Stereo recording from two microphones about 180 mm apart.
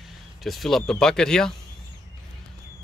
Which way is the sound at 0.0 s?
Centre (ahead or behind).